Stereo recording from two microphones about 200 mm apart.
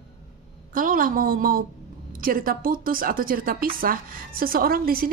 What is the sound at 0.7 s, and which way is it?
A woman's voice, 45° right (ahead or behind).